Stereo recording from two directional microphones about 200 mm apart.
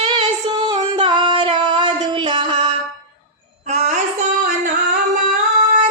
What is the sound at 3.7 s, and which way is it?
Female singing, 35° right (ahead or behind).